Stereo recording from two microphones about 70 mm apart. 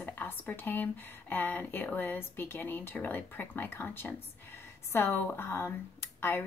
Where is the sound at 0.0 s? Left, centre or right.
Left.